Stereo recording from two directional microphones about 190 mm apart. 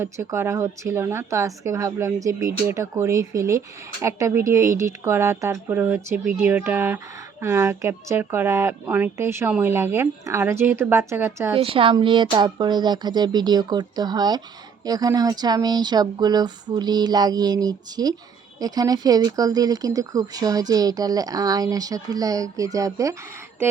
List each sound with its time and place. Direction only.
0.0 s speech: 15° right (ahead or behind)
11.5 s speech: 30° right (ahead or behind)